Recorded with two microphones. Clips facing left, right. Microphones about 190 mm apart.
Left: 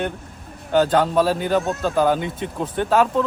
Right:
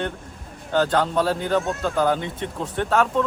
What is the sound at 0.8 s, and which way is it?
Speech, 5° left (ahead or behind).